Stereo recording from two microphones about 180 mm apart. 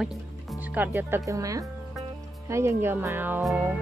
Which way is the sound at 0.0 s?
5° right (ahead or behind).